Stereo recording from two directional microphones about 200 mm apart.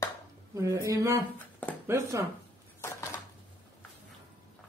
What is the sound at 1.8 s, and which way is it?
Speech, 15° right (ahead or behind).